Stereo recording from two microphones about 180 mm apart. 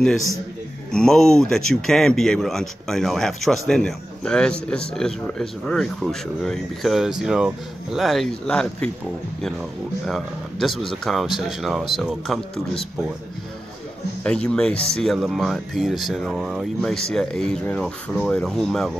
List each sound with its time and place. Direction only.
0.0 s speech: centre (ahead or behind)
10.0 s speech: centre (ahead or behind)
14.2 s speech: 5° left (ahead or behind)